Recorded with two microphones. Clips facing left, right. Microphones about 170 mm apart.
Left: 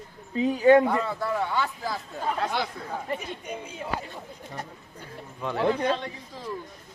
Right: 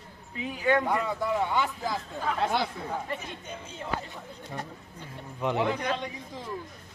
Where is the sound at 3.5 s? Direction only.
10° left (ahead or behind).